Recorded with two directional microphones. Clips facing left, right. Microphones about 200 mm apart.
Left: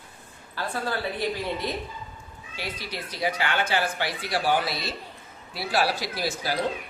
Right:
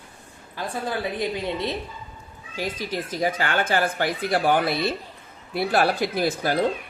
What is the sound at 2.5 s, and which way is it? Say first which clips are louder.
Speech: right 7 dB; 45° right (ahead or behind).